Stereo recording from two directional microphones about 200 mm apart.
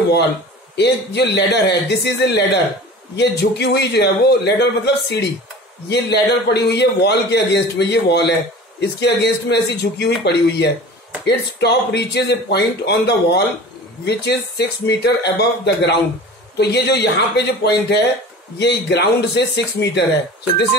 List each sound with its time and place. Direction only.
0.7 s a man's voice: 55° left (ahead or behind)